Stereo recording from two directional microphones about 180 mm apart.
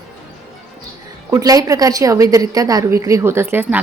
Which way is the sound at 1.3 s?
20° right (ahead or behind).